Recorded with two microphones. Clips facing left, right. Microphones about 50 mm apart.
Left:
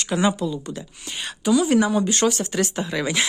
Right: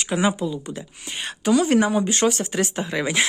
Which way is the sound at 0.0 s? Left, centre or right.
Centre.